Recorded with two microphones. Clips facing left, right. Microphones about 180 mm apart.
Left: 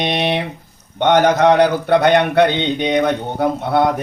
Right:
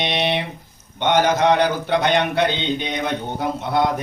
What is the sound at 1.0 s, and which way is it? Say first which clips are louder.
A man's voice: left 5 dB; 55° left (ahead or behind).